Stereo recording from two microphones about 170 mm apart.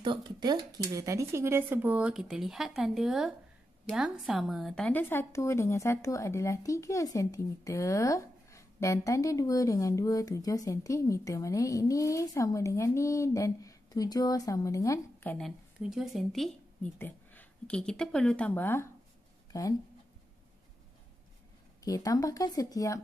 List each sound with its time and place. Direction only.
0.0 s a woman's voice: 25° right (ahead or behind); by 15.3 s 20° left (ahead or behind)
15.3 s a woman's voice: centre (ahead or behind); by 19.7 s 20° left (ahead or behind)
21.8 s a woman's voice: 20° left (ahead or behind)